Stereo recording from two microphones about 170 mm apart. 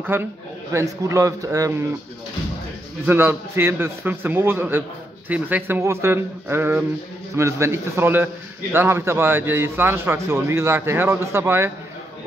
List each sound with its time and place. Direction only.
0.1 s a man's voice: 15° right (ahead or behind)
3.1 s a man's voice: 15° right (ahead or behind)